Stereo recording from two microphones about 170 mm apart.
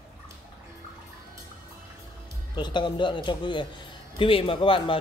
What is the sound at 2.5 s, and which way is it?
A man's voice, 25° left (ahead or behind).